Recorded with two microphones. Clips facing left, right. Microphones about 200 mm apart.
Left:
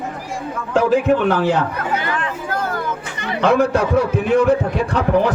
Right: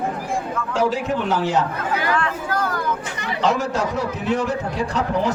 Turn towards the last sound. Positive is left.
turn(degrees=60)  # may be behind; listen again after turning